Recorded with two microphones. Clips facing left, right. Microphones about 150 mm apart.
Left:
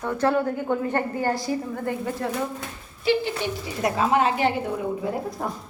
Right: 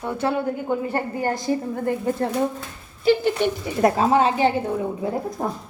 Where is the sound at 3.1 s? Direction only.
50° right (ahead or behind); by 5.5 s 25° right (ahead or behind).